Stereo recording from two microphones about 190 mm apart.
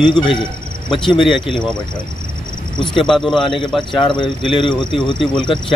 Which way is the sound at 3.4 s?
25° left (ahead or behind).